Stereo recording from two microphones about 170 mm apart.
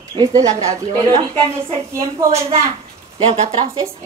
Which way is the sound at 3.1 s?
25° right (ahead or behind).